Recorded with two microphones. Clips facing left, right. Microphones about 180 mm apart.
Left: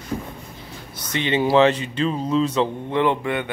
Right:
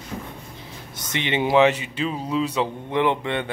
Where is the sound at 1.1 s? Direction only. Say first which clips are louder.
Left 2 dB; 20° right (ahead or behind).